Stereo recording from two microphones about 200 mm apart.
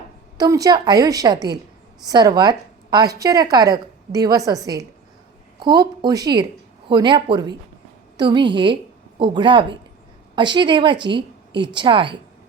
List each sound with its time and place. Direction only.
0.3 s a woman's voice: 20° right (ahead or behind)